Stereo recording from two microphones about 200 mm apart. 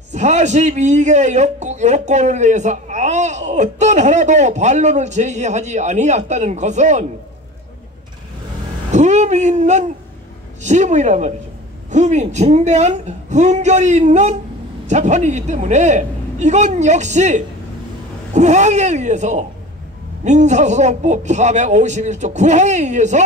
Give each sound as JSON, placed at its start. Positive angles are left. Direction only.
{"t": 0.1, "sound": "speech", "side_deg": -35}
{"t": 8.9, "sound": "speech", "side_deg": -35}